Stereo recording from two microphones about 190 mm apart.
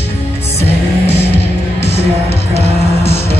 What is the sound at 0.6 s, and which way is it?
Music, 35° left (ahead or behind).